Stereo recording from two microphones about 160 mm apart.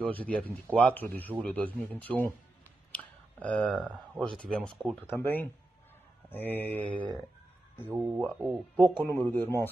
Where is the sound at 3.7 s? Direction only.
10° right (ahead or behind).